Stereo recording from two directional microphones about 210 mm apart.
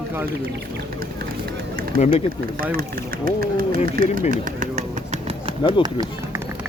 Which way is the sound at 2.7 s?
45° right (ahead or behind).